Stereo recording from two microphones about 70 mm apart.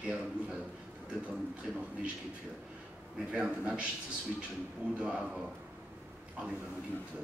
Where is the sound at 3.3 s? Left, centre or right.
Centre.